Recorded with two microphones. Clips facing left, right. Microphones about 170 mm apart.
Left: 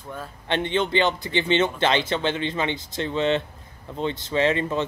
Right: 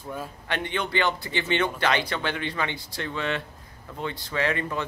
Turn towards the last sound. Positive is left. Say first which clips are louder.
# left 5 dB
turn(degrees=25)  # may be behind; listen again after turning